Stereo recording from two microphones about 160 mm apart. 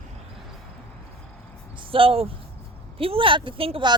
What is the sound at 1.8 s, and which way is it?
Speech, 35° right (ahead or behind).